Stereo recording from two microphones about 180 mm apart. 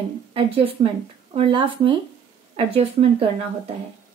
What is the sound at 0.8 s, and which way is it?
Speech, 40° right (ahead or behind).